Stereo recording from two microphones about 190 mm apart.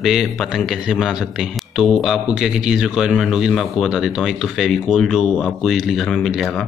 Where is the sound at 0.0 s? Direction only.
Centre (ahead or behind).